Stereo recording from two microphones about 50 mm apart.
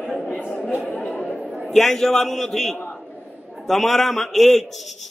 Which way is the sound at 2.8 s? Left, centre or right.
Centre.